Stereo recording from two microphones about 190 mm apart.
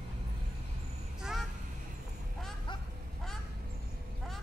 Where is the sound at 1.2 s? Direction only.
Centre (ahead or behind).